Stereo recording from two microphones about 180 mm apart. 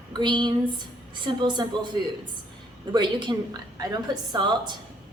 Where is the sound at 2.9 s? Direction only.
25° right (ahead or behind).